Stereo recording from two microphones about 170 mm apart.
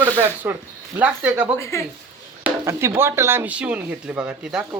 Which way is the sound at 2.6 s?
15° right (ahead or behind).